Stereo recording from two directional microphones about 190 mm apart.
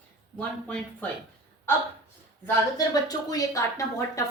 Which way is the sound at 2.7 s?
20° left (ahead or behind).